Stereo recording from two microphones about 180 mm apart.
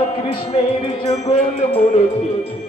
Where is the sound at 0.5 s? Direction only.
35° left (ahead or behind).